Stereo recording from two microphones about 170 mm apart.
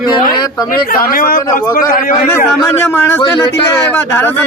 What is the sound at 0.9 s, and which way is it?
Speech, 60° left (ahead or behind).